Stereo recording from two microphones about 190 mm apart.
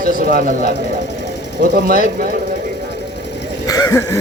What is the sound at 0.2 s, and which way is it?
Speech, 45° right (ahead or behind).